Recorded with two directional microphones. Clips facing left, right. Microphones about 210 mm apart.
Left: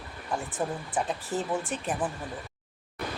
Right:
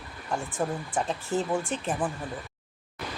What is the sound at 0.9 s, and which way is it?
A woman's voice, 5° left (ahead or behind).